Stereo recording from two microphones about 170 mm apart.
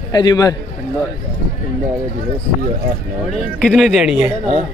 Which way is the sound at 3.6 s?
Centre (ahead or behind).